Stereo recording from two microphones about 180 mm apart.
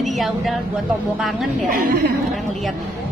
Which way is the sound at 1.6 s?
55° right (ahead or behind).